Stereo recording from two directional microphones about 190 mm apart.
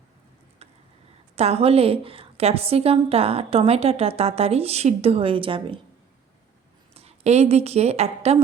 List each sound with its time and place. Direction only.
1.4 s a woman's voice: 35° right (ahead or behind)
6.9 s a woman's voice: 35° right (ahead or behind)